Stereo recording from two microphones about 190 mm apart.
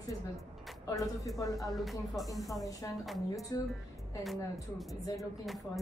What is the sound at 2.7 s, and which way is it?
Speech, 15° left (ahead or behind).